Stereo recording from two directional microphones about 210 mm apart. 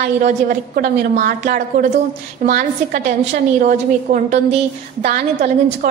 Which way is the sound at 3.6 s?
35° right (ahead or behind).